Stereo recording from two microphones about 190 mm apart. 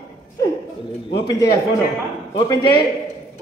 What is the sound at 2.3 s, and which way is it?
Speech, 20° left (ahead or behind).